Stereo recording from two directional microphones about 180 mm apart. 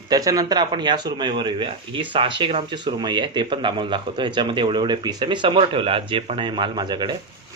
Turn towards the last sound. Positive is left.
turn(degrees=-25)  # may be behind; listen again after turning